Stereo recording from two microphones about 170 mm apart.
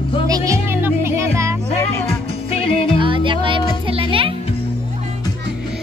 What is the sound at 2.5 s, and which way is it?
Music, 35° left (ahead or behind).